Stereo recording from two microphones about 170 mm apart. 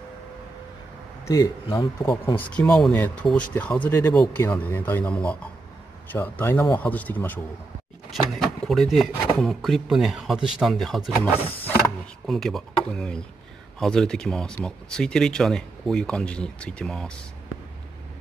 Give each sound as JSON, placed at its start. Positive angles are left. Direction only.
{"t": 1.2, "sound": "speech", "side_deg": 20}
{"t": 2.3, "sound": "speech", "side_deg": 5}
{"t": 8.4, "sound": "speech", "side_deg": 0}
{"t": 12.3, "sound": "speech", "side_deg": 0}